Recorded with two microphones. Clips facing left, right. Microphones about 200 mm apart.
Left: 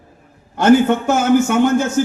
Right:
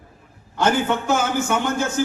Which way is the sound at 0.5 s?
55° left (ahead or behind).